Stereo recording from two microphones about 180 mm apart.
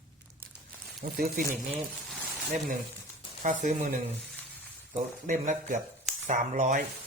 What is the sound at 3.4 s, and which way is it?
Speech, 45° right (ahead or behind).